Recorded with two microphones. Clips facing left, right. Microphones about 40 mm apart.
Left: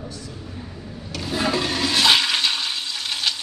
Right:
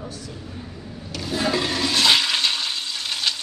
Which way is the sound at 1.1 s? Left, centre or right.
Centre.